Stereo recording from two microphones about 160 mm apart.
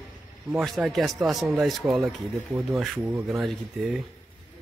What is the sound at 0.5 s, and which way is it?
Speech, centre (ahead or behind).